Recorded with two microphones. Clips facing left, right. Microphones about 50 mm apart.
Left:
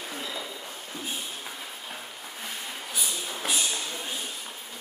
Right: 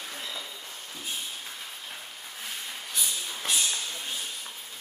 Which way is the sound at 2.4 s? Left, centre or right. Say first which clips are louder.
Left 1 dB; centre.